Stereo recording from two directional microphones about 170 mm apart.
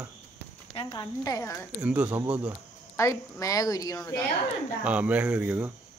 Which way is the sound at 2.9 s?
15° left (ahead or behind).